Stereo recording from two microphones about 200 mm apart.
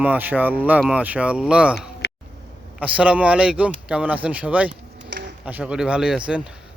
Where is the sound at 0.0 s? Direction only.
10° right (ahead or behind).